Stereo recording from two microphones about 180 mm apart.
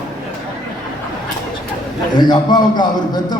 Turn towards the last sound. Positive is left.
turn(degrees=25)  # may be behind; listen again after turning